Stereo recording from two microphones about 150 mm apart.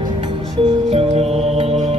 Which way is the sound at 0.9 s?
40° right (ahead or behind).